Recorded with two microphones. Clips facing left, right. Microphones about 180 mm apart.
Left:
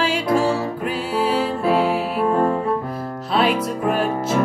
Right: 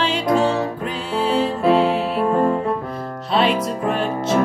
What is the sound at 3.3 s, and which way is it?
Music, 5° left (ahead or behind).